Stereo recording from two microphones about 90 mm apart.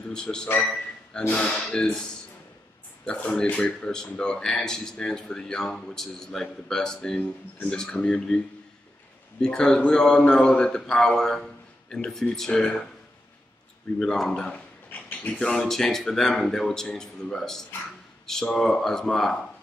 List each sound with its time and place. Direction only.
0.1 s speech: 10° left (ahead or behind)
0.6 s a sound: 10° left (ahead or behind)
1.2 s speech: 15° left (ahead or behind)
3.1 s speech: 10° left (ahead or behind)
7.2 s speech: 20° left (ahead or behind)
9.4 s speech: 10° left (ahead or behind)
13.9 s speech: 5° left (ahead or behind)